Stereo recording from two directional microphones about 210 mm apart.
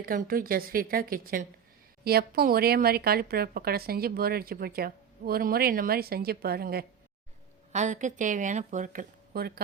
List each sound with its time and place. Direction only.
0.0 s speech: 45° right (ahead or behind)
7.7 s speech: 35° right (ahead or behind)